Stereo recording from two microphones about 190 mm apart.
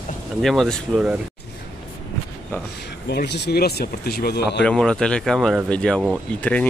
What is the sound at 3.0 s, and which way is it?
Speech, 60° left (ahead or behind).